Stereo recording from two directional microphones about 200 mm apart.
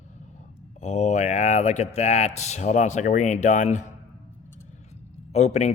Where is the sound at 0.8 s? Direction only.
35° left (ahead or behind).